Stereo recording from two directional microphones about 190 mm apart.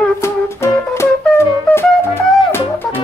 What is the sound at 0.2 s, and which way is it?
Music, 15° left (ahead or behind).